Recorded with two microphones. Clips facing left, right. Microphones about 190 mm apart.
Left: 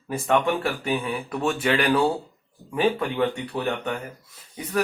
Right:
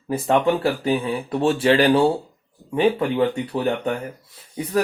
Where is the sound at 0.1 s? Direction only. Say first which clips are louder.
Right 3 dB; 35° right (ahead or behind).